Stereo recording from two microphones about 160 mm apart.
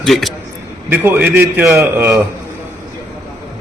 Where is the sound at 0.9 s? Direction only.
15° right (ahead or behind).